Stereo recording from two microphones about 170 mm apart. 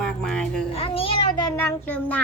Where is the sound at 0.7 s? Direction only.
35° left (ahead or behind).